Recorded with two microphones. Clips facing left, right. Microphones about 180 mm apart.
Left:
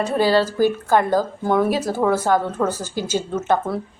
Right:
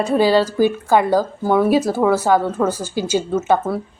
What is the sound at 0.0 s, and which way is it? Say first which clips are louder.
Speech: right 3 dB; 15° right (ahead or behind).